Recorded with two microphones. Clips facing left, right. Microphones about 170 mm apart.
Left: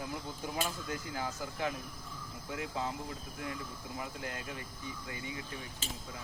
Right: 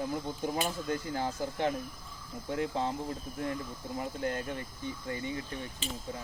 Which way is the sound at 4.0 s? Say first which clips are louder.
Right 8 dB; 35° right (ahead or behind).